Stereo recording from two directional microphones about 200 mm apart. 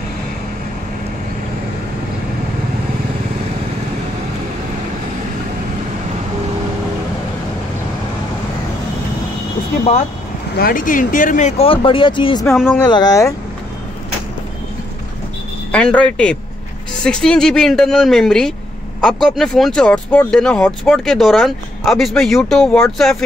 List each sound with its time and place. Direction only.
10.6 s speech: 45° left (ahead or behind); by 12.4 s 25° left (ahead or behind)
12.4 s speech: 5° right (ahead or behind)
12.7 s speech: 20° left (ahead or behind)
15.7 s speech: 5° left (ahead or behind)